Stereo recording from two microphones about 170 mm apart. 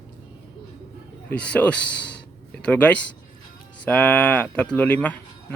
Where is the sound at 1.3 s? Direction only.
5° left (ahead or behind).